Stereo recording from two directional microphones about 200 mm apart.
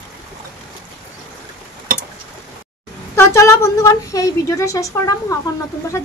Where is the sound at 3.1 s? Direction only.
15° left (ahead or behind).